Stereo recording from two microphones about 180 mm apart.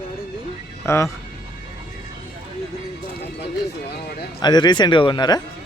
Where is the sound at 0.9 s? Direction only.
15° left (ahead or behind).